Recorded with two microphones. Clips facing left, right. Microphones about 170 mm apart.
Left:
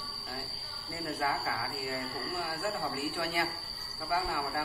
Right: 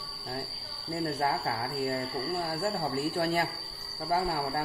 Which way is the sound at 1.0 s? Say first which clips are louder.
Right 3 dB; 40° right (ahead or behind).